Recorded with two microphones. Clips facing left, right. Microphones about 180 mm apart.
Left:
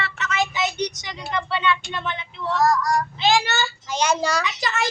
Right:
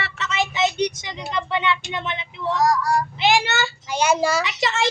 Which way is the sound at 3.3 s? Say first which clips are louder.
Even; 25° right (ahead or behind).